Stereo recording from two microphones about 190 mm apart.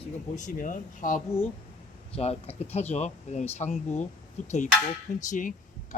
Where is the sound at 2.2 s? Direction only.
35° left (ahead or behind).